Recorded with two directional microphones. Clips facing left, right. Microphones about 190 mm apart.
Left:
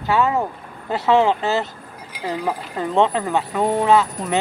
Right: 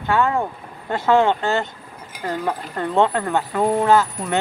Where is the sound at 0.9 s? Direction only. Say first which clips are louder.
Even; centre (ahead or behind).